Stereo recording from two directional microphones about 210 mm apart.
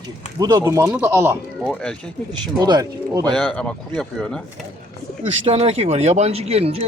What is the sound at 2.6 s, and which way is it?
Speech, 20° right (ahead or behind).